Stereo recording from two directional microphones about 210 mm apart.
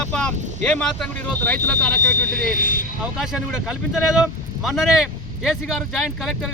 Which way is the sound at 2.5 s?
40° left (ahead or behind).